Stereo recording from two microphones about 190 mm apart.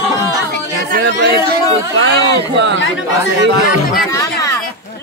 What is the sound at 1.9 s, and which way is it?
Speech, 65° right (ahead or behind).